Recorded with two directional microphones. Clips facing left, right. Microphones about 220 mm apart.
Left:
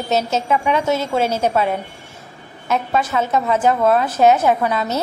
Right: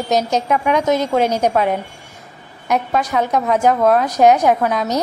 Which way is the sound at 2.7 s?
15° right (ahead or behind).